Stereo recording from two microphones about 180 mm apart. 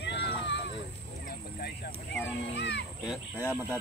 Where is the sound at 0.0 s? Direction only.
80° left.